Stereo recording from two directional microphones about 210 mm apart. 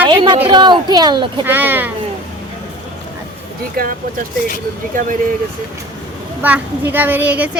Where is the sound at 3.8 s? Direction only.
40° right (ahead or behind).